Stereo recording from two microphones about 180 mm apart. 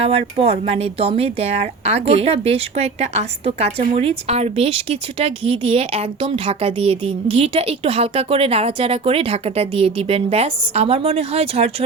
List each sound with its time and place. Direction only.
0.0 s speech: 35° right (ahead or behind)